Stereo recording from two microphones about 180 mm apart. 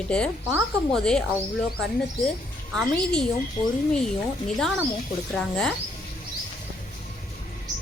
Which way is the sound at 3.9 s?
5° left (ahead or behind).